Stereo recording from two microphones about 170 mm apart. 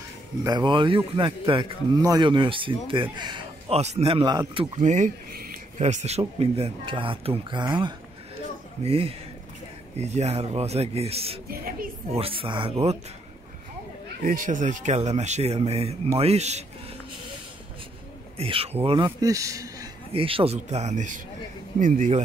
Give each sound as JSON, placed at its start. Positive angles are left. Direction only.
{"t": 0.4, "sound": "speech", "side_deg": -25}
{"t": 4.7, "sound": "speech", "side_deg": -45}
{"t": 11.5, "sound": "speech", "side_deg": -55}
{"t": 12.1, "sound": "speech", "side_deg": -35}
{"t": 14.2, "sound": "speech", "side_deg": -50}
{"t": 18.4, "sound": "speech", "side_deg": -35}
{"t": 19.0, "sound": "speech", "side_deg": -20}
{"t": 20.1, "sound": "speech", "side_deg": -30}